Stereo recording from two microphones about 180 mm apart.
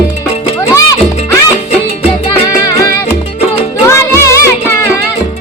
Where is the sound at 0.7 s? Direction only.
15° left (ahead or behind).